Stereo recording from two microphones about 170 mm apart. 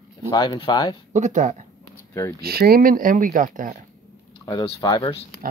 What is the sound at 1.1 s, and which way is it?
Speech, 45° right (ahead or behind).